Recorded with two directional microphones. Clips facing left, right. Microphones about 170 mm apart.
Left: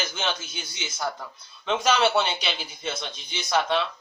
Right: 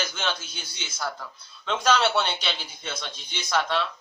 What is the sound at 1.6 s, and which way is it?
A man's voice, 10° left (ahead or behind).